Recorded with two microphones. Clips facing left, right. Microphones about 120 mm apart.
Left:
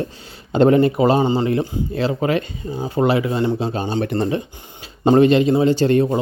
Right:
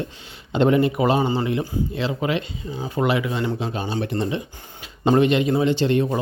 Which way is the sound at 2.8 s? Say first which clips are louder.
Left 4 dB; 30° left (ahead or behind).